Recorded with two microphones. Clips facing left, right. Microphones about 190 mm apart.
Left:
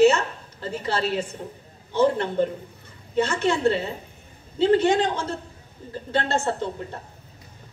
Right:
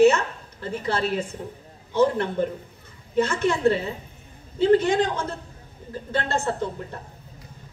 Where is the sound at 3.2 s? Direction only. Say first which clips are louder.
Even; 55° right (ahead or behind).